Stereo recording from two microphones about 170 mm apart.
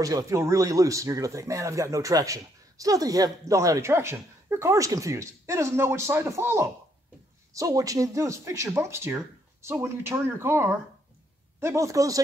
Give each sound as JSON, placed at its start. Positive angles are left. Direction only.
{"t": 0.0, "sound": "speech", "side_deg": -20}